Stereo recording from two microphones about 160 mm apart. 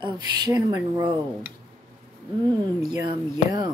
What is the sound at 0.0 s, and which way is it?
Speech, 25° right (ahead or behind).